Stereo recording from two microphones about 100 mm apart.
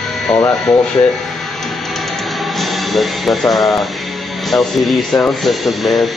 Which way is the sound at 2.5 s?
Centre (ahead or behind).